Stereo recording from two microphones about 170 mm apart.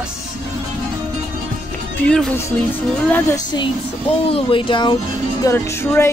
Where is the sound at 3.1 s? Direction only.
25° left (ahead or behind).